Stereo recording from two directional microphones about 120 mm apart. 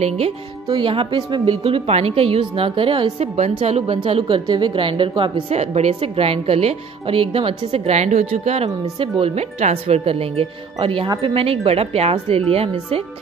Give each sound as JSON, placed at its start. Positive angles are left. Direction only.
{"t": 0.7, "sound": "a woman's voice", "side_deg": -45}
{"t": 4.5, "sound": "a woman's voice", "side_deg": -40}